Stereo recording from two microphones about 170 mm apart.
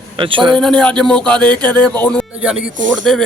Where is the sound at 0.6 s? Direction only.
5° left (ahead or behind).